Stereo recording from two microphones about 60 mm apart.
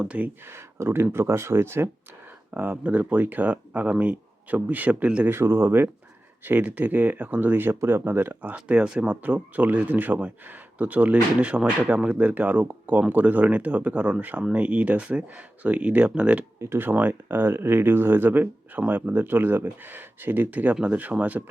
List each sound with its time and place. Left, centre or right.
0.0 s speech: right
0.5 s speech: right
2.5 s speech: right
5.2 s speech: right
6.4 s speech: right
8.3 s speech: right
16.6 s speech: right
16.9 s speech: right